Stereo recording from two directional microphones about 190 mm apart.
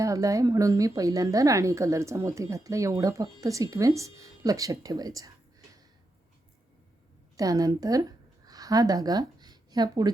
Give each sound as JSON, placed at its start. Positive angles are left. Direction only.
{"t": 0.0, "sound": "a woman's voice", "side_deg": -15}
{"t": 7.3, "sound": "speech", "side_deg": -20}
{"t": 8.4, "sound": "a sound", "side_deg": -20}